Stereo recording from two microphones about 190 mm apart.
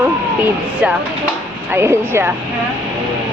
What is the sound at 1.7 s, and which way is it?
Speech, 15° right (ahead or behind).